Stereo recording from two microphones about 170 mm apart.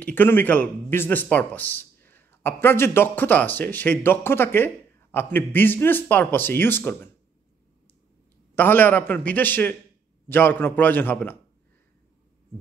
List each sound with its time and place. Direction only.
0.0 s speech: 10° left (ahead or behind)
8.5 s speech: 10° left (ahead or behind)